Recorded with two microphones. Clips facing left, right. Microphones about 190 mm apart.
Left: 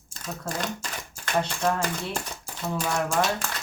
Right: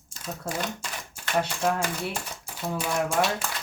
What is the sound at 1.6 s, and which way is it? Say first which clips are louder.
Speech: even; 10° right (ahead or behind).